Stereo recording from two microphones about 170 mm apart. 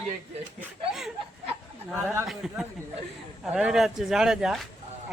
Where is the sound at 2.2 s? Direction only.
Centre (ahead or behind).